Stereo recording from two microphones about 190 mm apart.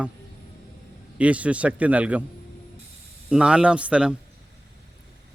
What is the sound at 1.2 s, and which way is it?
A man's voice, 5° right (ahead or behind).